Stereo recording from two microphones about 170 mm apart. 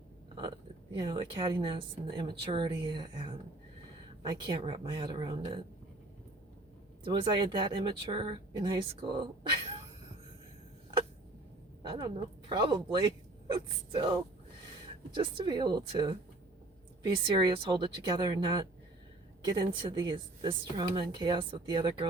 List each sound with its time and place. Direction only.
0.9 s speech: 25° right (ahead or behind)
7.0 s speech: 30° right (ahead or behind)
11.9 s a woman's voice: 25° right (ahead or behind)